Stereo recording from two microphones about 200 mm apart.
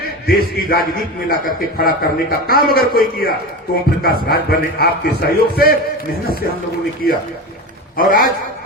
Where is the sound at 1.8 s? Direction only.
50° left (ahead or behind).